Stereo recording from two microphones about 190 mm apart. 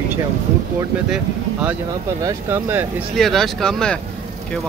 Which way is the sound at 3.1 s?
Centre (ahead or behind).